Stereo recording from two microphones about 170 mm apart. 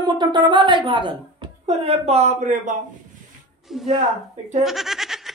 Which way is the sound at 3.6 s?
Centre (ahead or behind).